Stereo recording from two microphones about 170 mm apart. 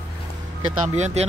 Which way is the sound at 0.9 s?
40° right (ahead or behind).